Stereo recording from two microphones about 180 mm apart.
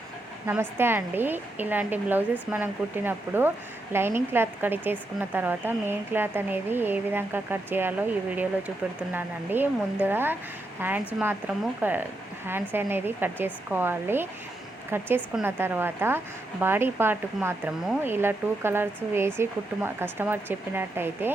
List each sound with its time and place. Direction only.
0.4 s a woman's voice: 10° right (ahead or behind)